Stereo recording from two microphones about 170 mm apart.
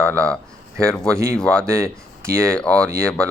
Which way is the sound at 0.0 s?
5° left (ahead or behind).